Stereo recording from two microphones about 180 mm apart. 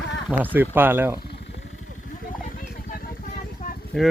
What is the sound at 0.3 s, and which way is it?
Speech, 10° right (ahead or behind).